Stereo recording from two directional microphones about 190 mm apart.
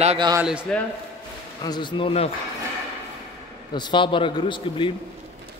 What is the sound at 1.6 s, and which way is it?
Speech, 20° left (ahead or behind).